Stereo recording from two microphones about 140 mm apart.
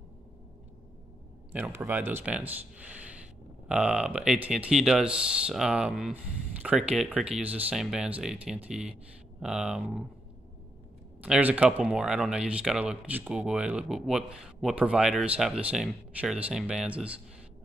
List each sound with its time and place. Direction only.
1.5 s speech: 15° right (ahead or behind)
11.1 s speech: 10° right (ahead or behind)